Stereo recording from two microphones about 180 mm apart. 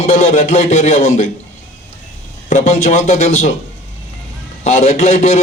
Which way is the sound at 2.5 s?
40° left (ahead or behind).